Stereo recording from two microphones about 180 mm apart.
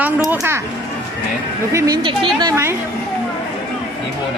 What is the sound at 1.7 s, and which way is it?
A woman's voice, 20° right (ahead or behind).